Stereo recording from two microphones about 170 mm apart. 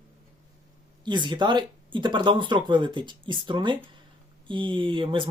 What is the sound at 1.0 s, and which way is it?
Speech, 25° right (ahead or behind).